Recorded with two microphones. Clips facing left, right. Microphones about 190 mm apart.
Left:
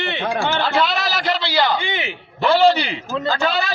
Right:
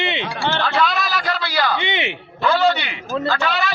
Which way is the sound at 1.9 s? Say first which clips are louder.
Right 2 dB; 25° right (ahead or behind).